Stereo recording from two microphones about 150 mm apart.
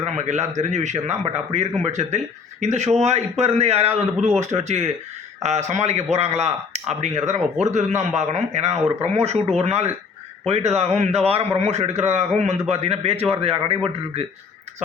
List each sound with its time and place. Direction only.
0.0 s speech: 50° right (ahead or behind)